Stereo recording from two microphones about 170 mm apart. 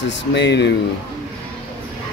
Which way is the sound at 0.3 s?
90° left.